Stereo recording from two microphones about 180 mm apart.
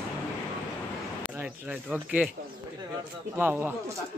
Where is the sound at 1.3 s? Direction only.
10° right (ahead or behind).